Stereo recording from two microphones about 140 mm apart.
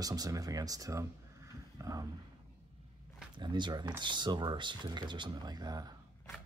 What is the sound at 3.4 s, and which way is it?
Speech, 35° right (ahead or behind).